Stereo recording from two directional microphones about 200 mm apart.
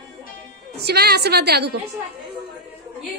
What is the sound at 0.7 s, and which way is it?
A woman's voice, 55° right (ahead or behind).